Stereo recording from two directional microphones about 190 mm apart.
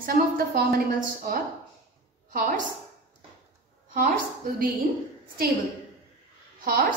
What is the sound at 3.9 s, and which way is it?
Speech, 50° right (ahead or behind).